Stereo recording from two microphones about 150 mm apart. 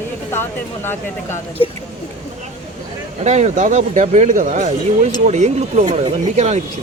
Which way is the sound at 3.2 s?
50° right (ahead or behind).